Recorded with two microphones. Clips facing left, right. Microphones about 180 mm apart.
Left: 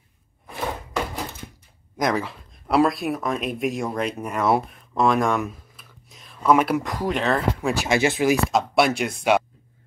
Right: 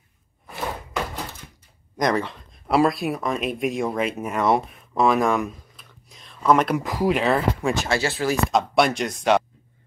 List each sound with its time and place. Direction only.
2.0 s speech: 5° left (ahead or behind)
6.8 s speech: 5° right (ahead or behind)
7.8 s speech: 15° left (ahead or behind)
8.5 s speech: 5° left (ahead or behind)